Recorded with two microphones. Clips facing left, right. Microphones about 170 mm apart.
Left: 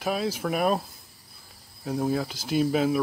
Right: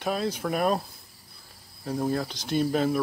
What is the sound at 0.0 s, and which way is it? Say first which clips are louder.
Speech: left 1 dB; 5° left (ahead or behind).